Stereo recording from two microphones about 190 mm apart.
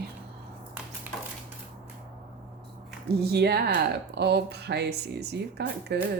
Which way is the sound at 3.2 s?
55° right (ahead or behind).